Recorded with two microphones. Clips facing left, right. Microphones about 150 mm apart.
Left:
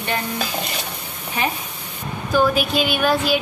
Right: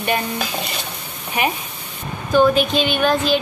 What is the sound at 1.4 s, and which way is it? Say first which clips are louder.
Speech: right 3 dB; 15° right (ahead or behind).